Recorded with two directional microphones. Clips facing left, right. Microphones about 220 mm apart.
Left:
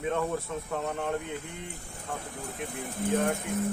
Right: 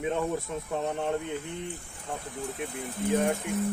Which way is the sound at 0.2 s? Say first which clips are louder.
Right 1 dB; 15° right (ahead or behind).